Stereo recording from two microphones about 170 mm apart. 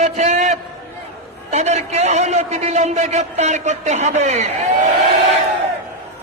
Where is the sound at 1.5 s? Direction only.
40° right (ahead or behind).